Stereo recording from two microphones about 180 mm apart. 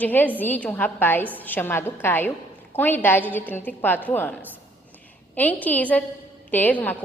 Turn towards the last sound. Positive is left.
turn(degrees=10)  # may be behind; listen again after turning